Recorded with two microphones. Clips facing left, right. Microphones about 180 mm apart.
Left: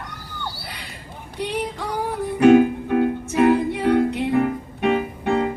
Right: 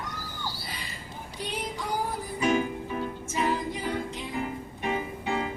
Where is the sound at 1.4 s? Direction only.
70° left (ahead or behind).